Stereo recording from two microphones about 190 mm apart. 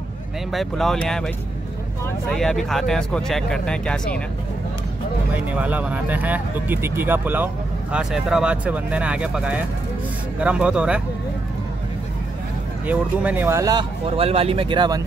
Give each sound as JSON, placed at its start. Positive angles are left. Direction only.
{"t": 0.5, "sound": "speech", "side_deg": 0}
{"t": 5.3, "sound": "speech", "side_deg": -10}
{"t": 12.8, "sound": "speech", "side_deg": -10}
{"t": 14.0, "sound": "speech", "side_deg": -30}